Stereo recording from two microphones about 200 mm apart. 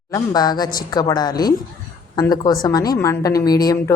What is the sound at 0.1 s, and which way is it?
A woman's voice, 20° left (ahead or behind).